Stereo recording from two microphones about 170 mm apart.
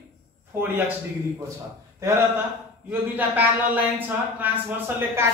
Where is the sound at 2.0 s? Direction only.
15° right (ahead or behind).